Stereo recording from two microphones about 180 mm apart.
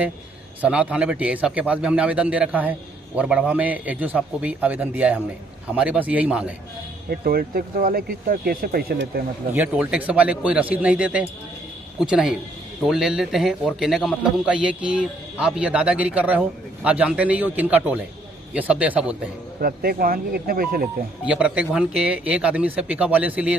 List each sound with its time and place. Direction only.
0.6 s a man's voice: 5° right (ahead or behind)
7.1 s speech: 55° right (ahead or behind)
9.5 s a man's voice: 10° right (ahead or behind)
19.6 s speech: 55° right (ahead or behind)
21.3 s a man's voice: 5° right (ahead or behind)